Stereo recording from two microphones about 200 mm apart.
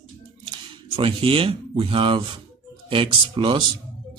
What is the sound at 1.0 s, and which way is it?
A man's voice, 25° right (ahead or behind).